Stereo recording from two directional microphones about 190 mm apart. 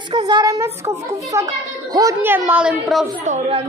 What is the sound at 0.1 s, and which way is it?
A woman's voice, 25° right (ahead or behind).